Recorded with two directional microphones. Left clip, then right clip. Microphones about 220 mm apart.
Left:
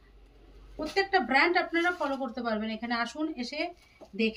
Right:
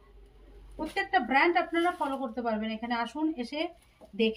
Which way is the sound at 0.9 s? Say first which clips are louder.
Left 1 dB; 15° left (ahead or behind).